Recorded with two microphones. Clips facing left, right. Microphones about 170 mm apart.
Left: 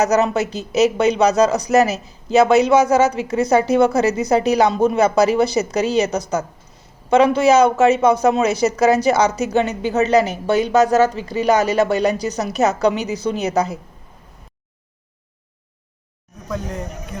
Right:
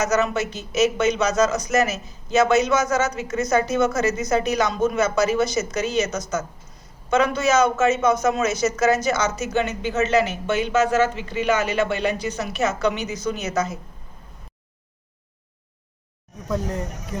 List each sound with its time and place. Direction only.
0.0 s speech: 35° left (ahead or behind)